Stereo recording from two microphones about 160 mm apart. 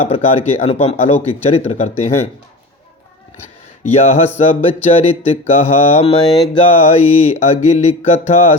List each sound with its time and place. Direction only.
0.1 s speech: 40° left (ahead or behind)
3.9 s speech: 40° left (ahead or behind)
6.6 s mantra: 40° left (ahead or behind)